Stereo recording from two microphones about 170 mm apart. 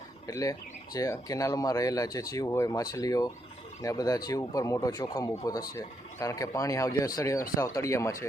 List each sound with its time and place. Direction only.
0.3 s speech: 20° left (ahead or behind)